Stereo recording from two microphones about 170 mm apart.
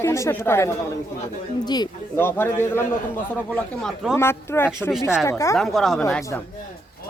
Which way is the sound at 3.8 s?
Centre (ahead or behind).